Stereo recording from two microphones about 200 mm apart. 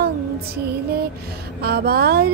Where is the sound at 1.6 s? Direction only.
55° right (ahead or behind).